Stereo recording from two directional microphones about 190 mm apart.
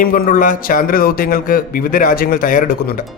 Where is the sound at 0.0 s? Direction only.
50° left (ahead or behind).